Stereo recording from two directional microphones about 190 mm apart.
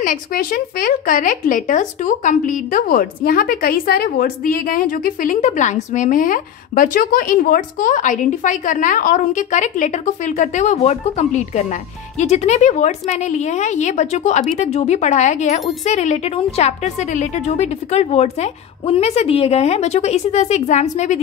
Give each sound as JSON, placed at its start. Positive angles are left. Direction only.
{"t": 0.0, "sound": "a woman's voice", "side_deg": 45}